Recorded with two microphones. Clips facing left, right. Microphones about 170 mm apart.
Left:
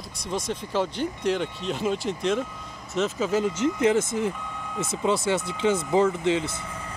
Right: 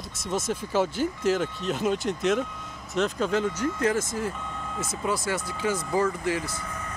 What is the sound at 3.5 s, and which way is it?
Speech, 20° left (ahead or behind).